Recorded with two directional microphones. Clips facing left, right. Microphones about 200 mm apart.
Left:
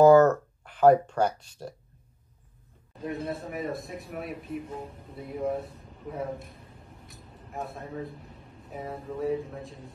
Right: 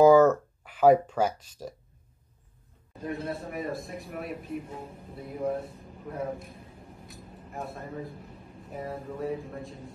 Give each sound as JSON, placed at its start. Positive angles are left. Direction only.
{"t": 0.0, "sound": "speech", "side_deg": -5}
{"t": 3.0, "sound": "speech", "side_deg": 0}
{"t": 7.5, "sound": "speech", "side_deg": 0}